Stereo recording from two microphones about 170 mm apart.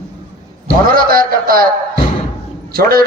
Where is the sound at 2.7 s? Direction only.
60° right (ahead or behind).